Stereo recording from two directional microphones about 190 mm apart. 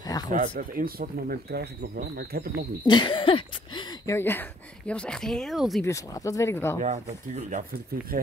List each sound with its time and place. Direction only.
0.6 s speech: 50° right (ahead or behind)
2.8 s speech: 25° left (ahead or behind); by 5.9 s centre (ahead or behind)
5.9 s speech: 15° left (ahead or behind)
6.8 s speech: 40° right (ahead or behind)